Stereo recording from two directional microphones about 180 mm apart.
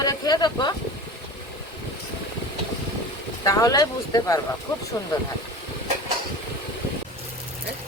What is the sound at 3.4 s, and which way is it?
Speech, 20° left (ahead or behind).